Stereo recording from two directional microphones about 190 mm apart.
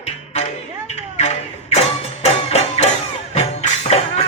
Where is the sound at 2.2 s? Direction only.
35° left (ahead or behind).